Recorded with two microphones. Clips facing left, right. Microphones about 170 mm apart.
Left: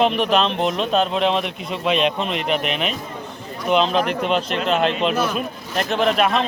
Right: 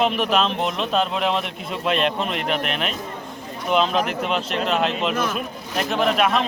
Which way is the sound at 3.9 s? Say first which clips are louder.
Left 3 dB; centre (ahead or behind).